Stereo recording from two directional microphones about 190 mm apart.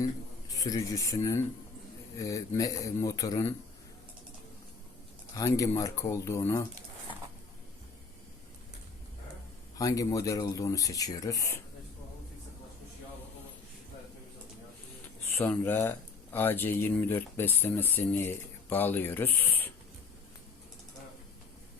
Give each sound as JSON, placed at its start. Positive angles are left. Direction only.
{"t": 0.5, "sound": "speech", "side_deg": 20}
{"t": 5.3, "sound": "speech", "side_deg": 15}
{"t": 9.7, "sound": "speech", "side_deg": 20}
{"t": 15.4, "sound": "speech", "side_deg": 10}